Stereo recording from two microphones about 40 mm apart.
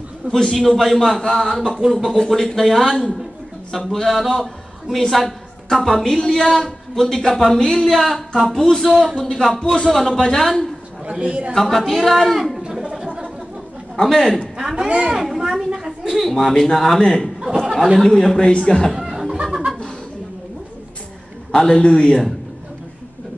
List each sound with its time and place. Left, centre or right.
0.3 s speech: centre
7.8 s speech: centre
11.1 s a man's voice: right
11.6 s speech: centre
14.0 s speech: centre
14.6 s speech: centre
14.9 s a man's voice: right
15.1 s a woman's voice: centre
16.3 s speech: centre
17.6 s a sound: centre
18.0 s speech: centre
18.9 s a sound: centre
21.5 s a man's voice: centre